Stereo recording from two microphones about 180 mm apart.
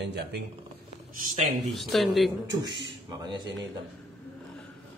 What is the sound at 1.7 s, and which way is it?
Speech, centre (ahead or behind).